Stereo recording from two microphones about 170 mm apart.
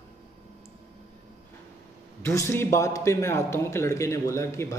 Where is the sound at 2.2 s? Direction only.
15° left (ahead or behind).